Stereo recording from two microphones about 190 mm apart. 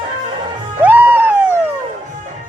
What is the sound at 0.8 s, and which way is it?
Music, 10° right (ahead or behind).